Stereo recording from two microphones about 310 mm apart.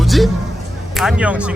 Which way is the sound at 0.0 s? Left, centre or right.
Centre.